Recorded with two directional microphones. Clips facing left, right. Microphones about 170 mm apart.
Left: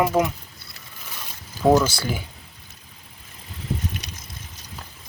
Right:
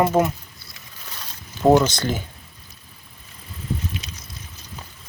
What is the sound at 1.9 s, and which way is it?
Speech, 10° left (ahead or behind).